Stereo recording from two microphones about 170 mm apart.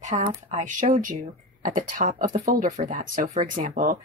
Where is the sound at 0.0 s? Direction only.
45° right (ahead or behind).